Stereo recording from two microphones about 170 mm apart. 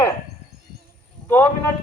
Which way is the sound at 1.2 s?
10° left (ahead or behind).